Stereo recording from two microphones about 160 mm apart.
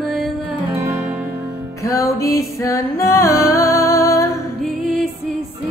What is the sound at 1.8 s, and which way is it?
Music, 20° left (ahead or behind).